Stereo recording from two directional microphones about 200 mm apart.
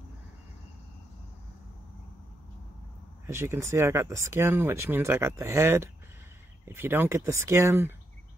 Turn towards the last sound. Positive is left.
turn(degrees=-15)  # may be behind; listen again after turning